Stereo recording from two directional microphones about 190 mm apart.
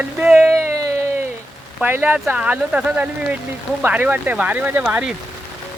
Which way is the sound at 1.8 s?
10° right (ahead or behind).